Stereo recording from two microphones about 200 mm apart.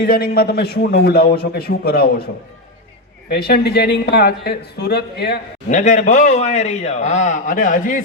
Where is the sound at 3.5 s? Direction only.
55° left (ahead or behind).